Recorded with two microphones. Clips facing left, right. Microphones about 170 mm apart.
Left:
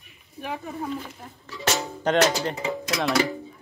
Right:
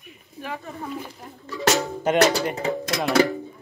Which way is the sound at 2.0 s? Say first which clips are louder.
Right 2 dB; 10° right (ahead or behind).